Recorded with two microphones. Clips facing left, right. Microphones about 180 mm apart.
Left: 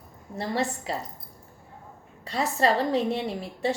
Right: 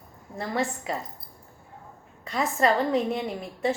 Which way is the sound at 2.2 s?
35° left (ahead or behind).